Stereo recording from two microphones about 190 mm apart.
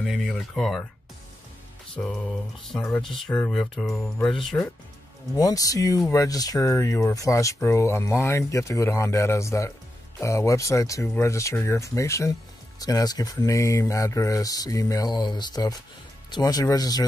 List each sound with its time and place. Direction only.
0.0 s speech: centre (ahead or behind)
2.0 s speech: 5° left (ahead or behind)
5.3 s speech: 20° left (ahead or behind)